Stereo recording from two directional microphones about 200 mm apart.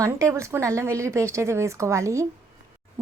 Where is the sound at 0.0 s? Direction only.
15° right (ahead or behind).